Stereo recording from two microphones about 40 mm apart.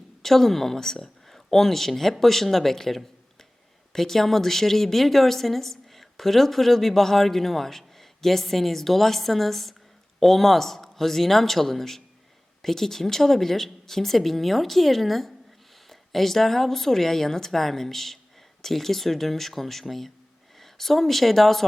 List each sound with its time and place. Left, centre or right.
0.2 s a woman's voice: centre